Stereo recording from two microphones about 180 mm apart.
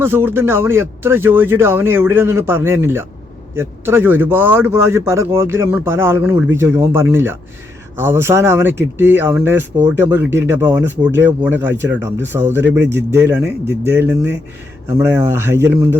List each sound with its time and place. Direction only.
0.0 s speech: 15° right (ahead or behind)